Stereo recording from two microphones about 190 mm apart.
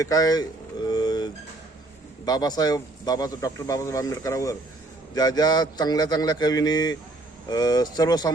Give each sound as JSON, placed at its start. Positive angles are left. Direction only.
{"t": 0.0, "sound": "a man's voice", "side_deg": 20}
{"t": 0.9, "sound": "a sound", "side_deg": 20}
{"t": 2.2, "sound": "a man's voice", "side_deg": 20}